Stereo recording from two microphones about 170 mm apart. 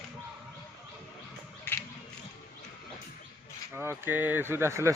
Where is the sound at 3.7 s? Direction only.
15° right (ahead or behind).